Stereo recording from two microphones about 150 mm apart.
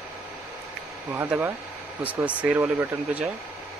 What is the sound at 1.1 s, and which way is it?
Speech, 10° right (ahead or behind).